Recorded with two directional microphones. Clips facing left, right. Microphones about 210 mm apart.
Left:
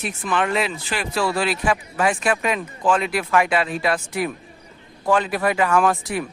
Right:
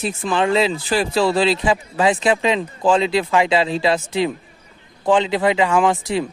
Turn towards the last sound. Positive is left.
turn(degrees=-20)  # may be behind; listen again after turning